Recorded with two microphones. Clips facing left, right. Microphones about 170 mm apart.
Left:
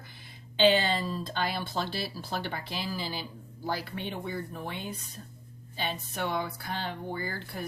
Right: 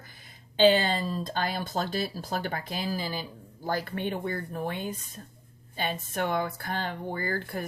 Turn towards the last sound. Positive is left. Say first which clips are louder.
# right 4 dB
turn(degrees=-50)  # may be behind; listen again after turning